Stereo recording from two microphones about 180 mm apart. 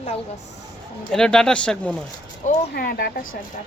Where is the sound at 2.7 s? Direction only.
55° left (ahead or behind).